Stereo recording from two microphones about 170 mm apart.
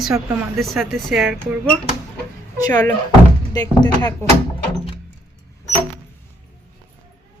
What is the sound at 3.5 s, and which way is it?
Speech, 25° left (ahead or behind).